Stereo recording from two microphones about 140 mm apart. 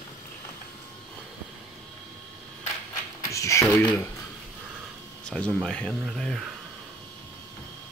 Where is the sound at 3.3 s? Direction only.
20° left (ahead or behind).